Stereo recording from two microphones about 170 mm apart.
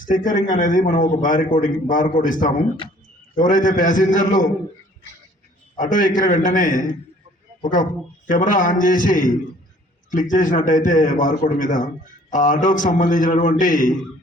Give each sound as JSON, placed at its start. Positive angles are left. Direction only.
{"t": 0.0, "sound": "a man's voice", "side_deg": 50}
{"t": 5.7, "sound": "a man's voice", "side_deg": 50}